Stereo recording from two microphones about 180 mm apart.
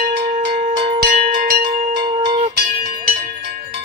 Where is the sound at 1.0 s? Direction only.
55° right (ahead or behind).